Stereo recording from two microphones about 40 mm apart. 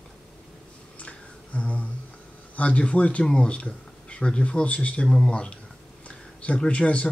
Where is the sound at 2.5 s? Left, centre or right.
Left.